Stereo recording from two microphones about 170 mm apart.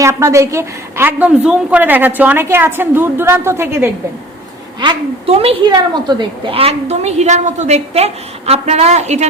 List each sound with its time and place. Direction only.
0.0 s a woman's voice: 15° right (ahead or behind)
4.8 s a woman's voice: 30° right (ahead or behind)